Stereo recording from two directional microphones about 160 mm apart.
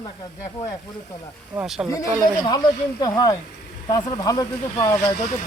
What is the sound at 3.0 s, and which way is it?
Speech, 25° left (ahead or behind).